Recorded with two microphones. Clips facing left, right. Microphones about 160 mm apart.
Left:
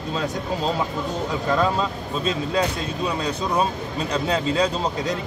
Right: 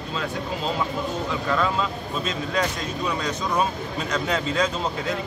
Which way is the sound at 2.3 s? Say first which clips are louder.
Left 4 dB; 30° left (ahead or behind).